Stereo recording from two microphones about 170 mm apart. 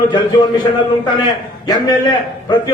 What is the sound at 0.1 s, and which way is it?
Speech, 25° left (ahead or behind).